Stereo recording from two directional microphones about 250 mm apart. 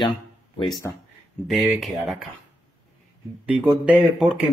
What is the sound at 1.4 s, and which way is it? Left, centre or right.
Speech, centre.